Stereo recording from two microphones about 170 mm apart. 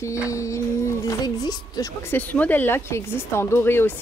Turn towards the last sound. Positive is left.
turn(degrees=15)  # may be behind; listen again after turning